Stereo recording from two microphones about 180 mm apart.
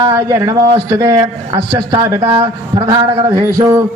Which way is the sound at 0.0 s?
20° right (ahead or behind).